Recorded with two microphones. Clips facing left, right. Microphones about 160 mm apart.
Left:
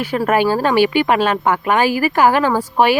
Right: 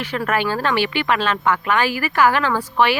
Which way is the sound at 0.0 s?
45° left (ahead or behind).